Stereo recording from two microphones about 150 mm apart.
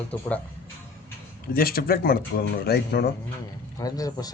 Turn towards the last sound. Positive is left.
turn(degrees=25)  # may be behind; listen again after turning